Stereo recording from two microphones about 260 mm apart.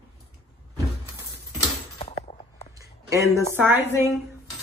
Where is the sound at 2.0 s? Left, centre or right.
Left.